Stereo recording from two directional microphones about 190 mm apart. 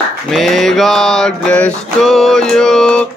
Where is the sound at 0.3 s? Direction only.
Centre (ahead or behind).